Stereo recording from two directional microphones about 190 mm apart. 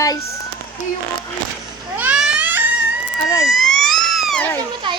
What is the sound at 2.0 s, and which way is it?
Baby cry, 5° right (ahead or behind).